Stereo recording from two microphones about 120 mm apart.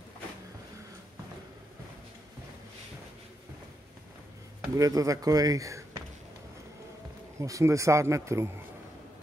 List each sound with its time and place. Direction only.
4.7 s speech: 30° right (ahead or behind)
7.3 s speech: 25° right (ahead or behind)